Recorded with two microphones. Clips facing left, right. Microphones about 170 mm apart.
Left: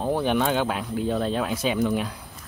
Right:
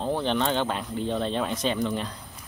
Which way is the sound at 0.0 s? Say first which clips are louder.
Left 3 dB; 10° left (ahead or behind).